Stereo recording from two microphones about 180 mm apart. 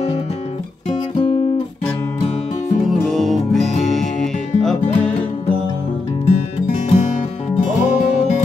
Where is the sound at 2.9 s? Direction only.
Centre (ahead or behind).